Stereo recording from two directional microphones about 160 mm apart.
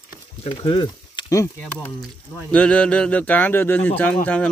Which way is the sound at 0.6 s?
30° left (ahead or behind).